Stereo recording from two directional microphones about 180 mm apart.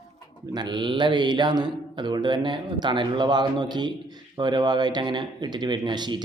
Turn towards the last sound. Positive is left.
turn(degrees=-25)  # may be behind; listen again after turning